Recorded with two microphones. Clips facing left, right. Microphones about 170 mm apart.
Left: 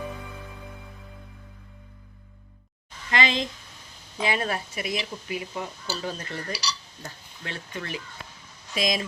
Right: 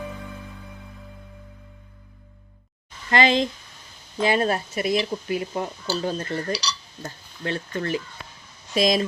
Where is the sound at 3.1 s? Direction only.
35° right (ahead or behind).